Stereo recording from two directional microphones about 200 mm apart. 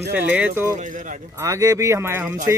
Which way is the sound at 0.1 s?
10° right (ahead or behind).